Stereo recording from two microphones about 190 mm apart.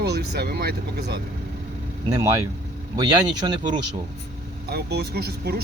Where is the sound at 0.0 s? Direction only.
60° right (ahead or behind).